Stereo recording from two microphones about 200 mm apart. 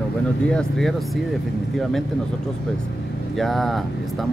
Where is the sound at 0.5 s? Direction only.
5° left (ahead or behind).